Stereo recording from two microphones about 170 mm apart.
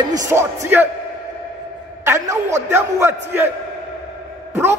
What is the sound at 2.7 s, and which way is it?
Speech, 15° right (ahead or behind).